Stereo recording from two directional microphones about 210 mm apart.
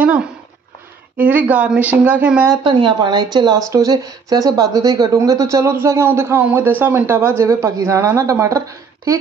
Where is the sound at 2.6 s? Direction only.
20° right (ahead or behind).